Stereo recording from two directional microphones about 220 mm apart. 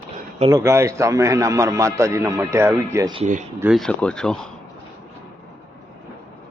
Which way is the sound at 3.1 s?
35° right (ahead or behind).